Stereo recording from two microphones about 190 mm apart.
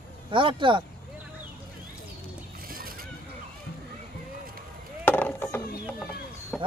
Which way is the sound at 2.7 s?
50° right (ahead or behind).